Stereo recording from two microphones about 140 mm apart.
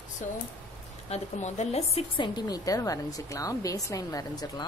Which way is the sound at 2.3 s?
25° left (ahead or behind).